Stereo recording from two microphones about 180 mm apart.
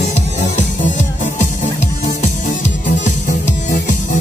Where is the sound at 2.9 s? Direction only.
45° left (ahead or behind).